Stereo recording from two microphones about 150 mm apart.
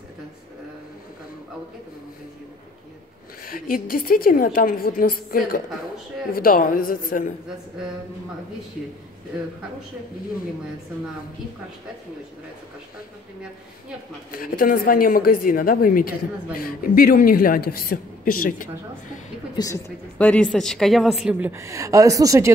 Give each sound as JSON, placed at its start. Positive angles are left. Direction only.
{"t": 3.4, "sound": "a woman's voice", "side_deg": 65}
{"t": 14.3, "sound": "a woman's voice", "side_deg": 70}
{"t": 19.5, "sound": "a woman's voice", "side_deg": 25}
{"t": 20.2, "sound": "a woman's voice", "side_deg": 10}